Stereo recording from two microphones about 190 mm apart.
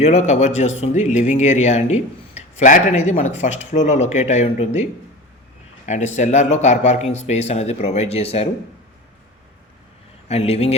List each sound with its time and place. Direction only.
0.0 s speech: 35° left (ahead or behind)
6.1 s speech: 40° left (ahead or behind)
10.2 s speech: 35° left (ahead or behind)